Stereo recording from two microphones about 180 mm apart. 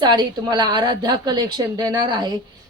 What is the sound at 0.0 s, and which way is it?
Speech, 25° right (ahead or behind).